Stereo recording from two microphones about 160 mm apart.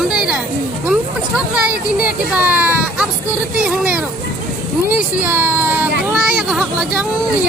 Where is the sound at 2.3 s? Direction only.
10° right (ahead or behind).